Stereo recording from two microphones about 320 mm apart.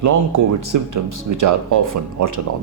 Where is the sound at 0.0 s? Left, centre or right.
Right.